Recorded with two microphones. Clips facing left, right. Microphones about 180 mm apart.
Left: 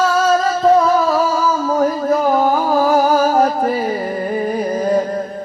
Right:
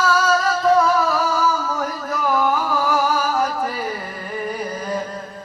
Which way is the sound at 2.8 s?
35° left (ahead or behind).